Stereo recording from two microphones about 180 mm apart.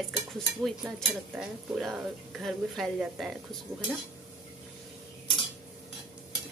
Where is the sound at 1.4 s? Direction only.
Centre (ahead or behind).